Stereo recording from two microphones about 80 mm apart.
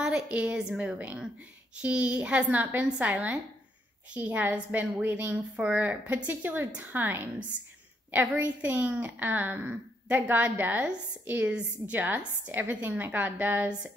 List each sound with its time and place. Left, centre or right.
0.0 s a woman's voice: centre
0.9 s a woman's voice: centre